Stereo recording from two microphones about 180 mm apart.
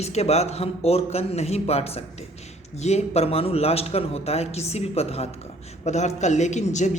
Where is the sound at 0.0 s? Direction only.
35° left (ahead or behind).